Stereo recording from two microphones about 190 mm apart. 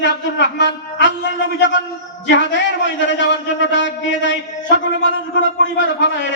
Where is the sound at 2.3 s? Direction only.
70° left (ahead or behind).